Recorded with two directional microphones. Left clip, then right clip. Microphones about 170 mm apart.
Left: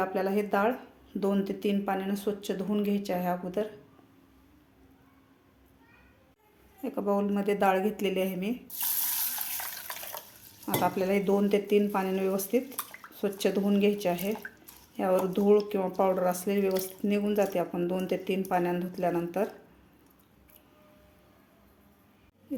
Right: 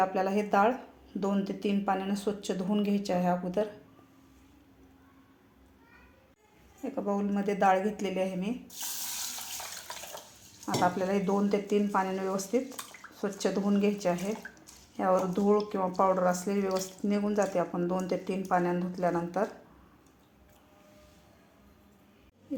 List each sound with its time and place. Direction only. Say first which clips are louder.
0.0 s speech: right 1 dB; 10° left (ahead or behind)
1.2 s speech: left 2 dB; 15° left (ahead or behind)
6.8 s speech: left 3 dB; 25° left (ahead or behind)
10.8 s speech: left 1 dB; 15° left (ahead or behind)